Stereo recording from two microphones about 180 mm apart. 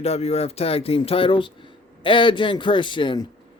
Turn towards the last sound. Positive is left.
turn(degrees=25)  # may be behind; listen again after turning